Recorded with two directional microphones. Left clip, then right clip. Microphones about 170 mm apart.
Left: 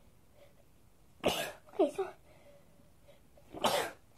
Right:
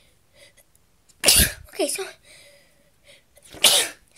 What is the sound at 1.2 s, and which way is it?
Cough, 20° right (ahead or behind).